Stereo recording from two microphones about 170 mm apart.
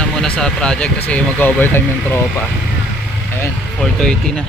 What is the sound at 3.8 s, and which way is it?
Speech, 5° left (ahead or behind).